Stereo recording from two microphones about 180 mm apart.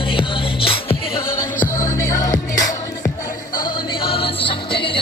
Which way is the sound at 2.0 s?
20° left (ahead or behind).